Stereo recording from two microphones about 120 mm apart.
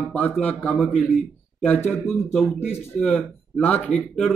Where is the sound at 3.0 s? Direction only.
10° left (ahead or behind).